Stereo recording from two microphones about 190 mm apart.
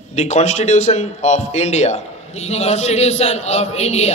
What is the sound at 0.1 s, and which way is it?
Speech, 35° left (ahead or behind).